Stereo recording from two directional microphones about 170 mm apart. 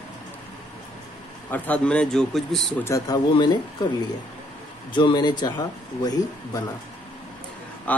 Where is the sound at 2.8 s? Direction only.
20° left (ahead or behind).